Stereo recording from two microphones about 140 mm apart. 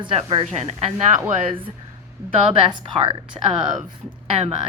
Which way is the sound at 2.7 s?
35° right (ahead or behind).